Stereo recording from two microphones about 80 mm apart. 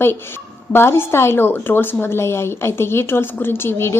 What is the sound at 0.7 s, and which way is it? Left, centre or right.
A woman's voice, left.